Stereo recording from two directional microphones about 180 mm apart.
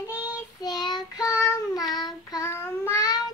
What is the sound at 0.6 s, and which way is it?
Child singing, 25° left (ahead or behind).